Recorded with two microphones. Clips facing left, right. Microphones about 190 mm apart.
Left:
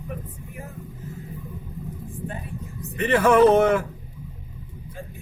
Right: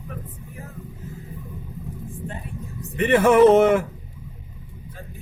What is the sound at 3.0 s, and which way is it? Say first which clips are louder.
Speech: right 2 dB; 25° right (ahead or behind).